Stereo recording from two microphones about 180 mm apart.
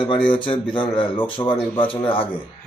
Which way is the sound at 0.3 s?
25° left (ahead or behind).